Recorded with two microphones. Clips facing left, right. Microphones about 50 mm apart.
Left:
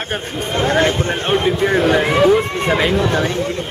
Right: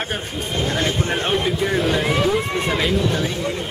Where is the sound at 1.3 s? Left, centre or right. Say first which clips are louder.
Left 7 dB; left.